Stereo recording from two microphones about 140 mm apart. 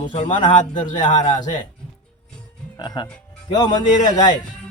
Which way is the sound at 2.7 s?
30° left (ahead or behind).